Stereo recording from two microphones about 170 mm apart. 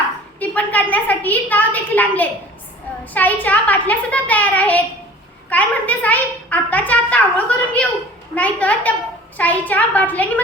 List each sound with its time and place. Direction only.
0.3 s a woman's voice: 10° left (ahead or behind)